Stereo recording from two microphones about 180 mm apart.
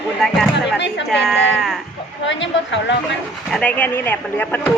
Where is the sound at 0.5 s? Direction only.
75° left (ahead or behind).